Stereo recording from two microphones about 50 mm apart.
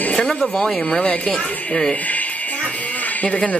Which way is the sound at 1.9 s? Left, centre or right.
Left.